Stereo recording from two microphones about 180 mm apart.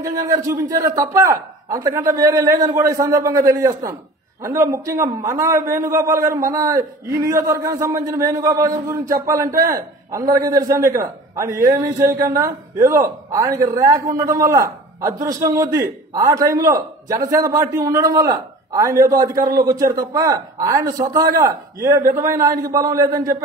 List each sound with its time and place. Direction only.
0.0 s a man's voice: 20° right (ahead or behind)